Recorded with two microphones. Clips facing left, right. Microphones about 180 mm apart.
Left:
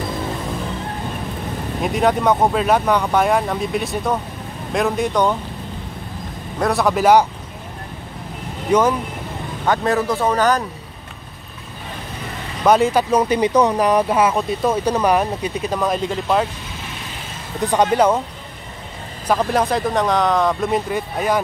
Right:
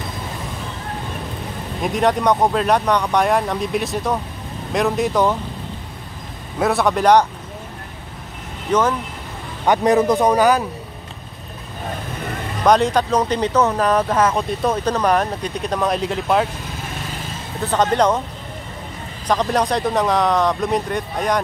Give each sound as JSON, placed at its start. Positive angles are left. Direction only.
{"t": 1.8, "sound": "speech", "side_deg": 0}
{"t": 6.6, "sound": "speech", "side_deg": 0}
{"t": 8.7, "sound": "speech", "side_deg": 10}
{"t": 9.7, "sound": "a man's voice", "side_deg": -20}
{"t": 12.6, "sound": "speech", "side_deg": 5}
{"t": 17.6, "sound": "speech", "side_deg": 10}
{"t": 19.2, "sound": "speech", "side_deg": 5}